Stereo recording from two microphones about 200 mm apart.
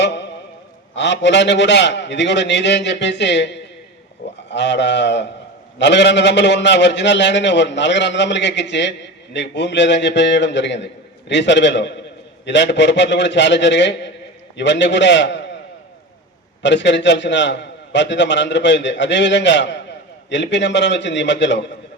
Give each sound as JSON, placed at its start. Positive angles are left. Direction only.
{"t": 0.0, "sound": "a sound", "side_deg": 60}
{"t": 0.9, "sound": "a man's voice", "side_deg": 60}
{"t": 16.6, "sound": "a man's voice", "side_deg": 60}